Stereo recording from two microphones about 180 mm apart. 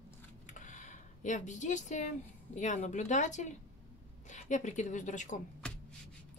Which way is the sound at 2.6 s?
40° left (ahead or behind).